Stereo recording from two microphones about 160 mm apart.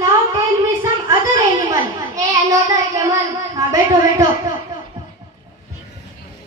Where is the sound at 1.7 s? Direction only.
20° right (ahead or behind).